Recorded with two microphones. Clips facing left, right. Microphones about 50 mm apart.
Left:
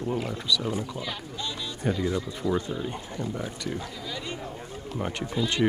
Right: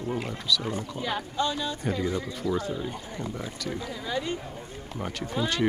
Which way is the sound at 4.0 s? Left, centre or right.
Right.